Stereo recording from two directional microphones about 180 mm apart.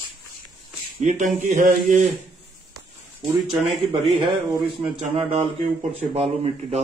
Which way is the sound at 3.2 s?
Centre (ahead or behind).